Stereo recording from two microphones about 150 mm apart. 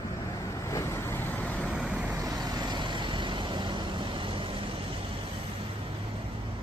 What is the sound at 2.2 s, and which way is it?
Vehicle, 25° right (ahead or behind).